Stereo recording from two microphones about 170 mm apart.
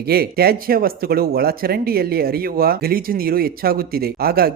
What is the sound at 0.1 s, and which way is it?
Speech, 65° right (ahead or behind).